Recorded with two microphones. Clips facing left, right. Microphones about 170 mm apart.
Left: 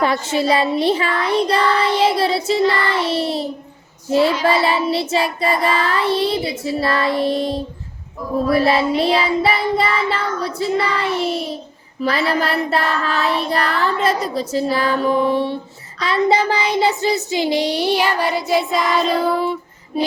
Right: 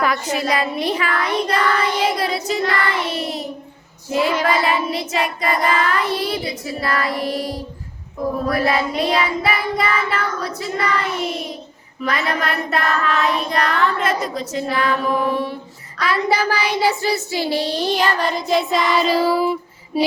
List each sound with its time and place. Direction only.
0.0 s child singing: 30° left (ahead or behind); by 20.1 s 5° right (ahead or behind)